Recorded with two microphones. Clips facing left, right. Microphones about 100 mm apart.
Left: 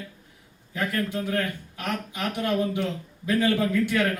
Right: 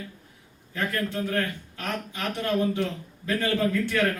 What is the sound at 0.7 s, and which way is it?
A man's voice, 15° left (ahead or behind).